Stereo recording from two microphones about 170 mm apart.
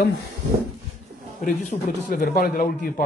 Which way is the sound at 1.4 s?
50° left (ahead or behind).